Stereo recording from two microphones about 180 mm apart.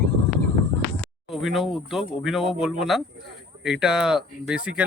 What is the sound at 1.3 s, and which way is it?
Speech, centre (ahead or behind).